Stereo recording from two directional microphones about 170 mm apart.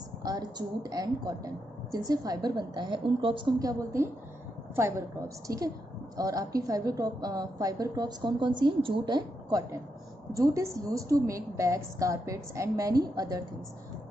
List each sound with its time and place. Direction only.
0.2 s a woman's voice: 25° right (ahead or behind)
6.1 s a woman's voice: 20° right (ahead or behind)